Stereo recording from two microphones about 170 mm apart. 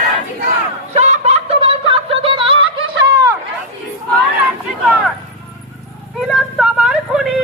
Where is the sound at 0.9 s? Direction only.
40° right (ahead or behind).